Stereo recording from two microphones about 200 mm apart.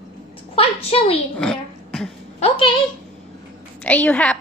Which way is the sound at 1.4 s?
5° left (ahead or behind).